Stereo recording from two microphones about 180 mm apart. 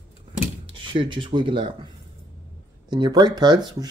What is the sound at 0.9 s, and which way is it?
Speech, 25° right (ahead or behind).